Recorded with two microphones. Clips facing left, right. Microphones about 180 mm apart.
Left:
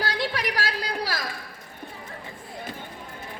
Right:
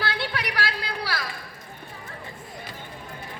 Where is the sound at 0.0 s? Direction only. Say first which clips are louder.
Left 2 dB; 40° left (ahead or behind).